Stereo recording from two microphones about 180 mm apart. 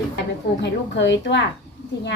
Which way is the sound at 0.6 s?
80° left.